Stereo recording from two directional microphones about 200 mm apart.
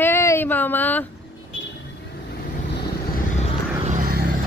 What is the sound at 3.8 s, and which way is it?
Vehicle, 45° right (ahead or behind).